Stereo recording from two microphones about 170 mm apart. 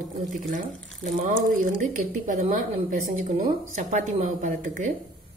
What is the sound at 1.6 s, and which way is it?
A woman's voice, 50° right (ahead or behind).